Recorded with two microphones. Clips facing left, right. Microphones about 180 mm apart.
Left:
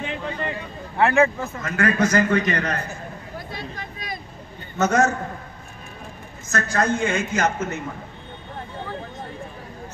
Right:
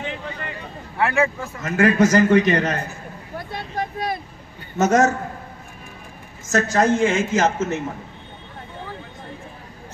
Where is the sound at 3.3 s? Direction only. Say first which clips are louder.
Right 8 dB; 60° right (ahead or behind).